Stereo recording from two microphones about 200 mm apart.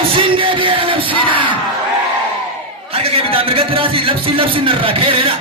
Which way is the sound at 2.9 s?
30° right (ahead or behind).